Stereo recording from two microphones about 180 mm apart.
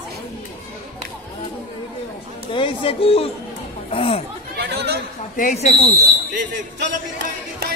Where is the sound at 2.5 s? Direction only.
30° left (ahead or behind).